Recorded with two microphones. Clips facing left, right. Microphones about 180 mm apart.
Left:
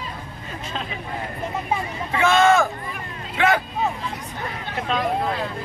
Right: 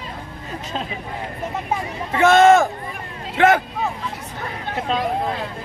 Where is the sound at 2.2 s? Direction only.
45° right (ahead or behind).